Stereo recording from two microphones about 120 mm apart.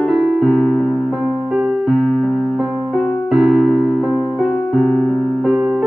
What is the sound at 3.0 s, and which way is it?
Piano, 5° right (ahead or behind).